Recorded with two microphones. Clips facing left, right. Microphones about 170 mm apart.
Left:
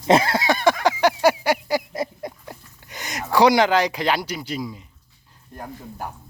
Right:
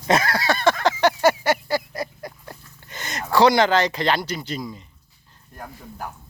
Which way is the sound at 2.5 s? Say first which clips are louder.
Left 1 dB; 10° left (ahead or behind).